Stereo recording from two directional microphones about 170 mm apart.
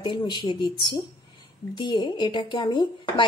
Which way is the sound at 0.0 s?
30° left (ahead or behind).